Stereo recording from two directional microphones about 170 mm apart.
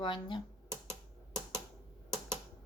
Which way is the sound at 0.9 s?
15° right (ahead or behind).